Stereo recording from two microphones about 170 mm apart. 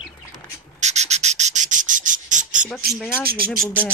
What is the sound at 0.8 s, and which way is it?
Cricket, 40° right (ahead or behind).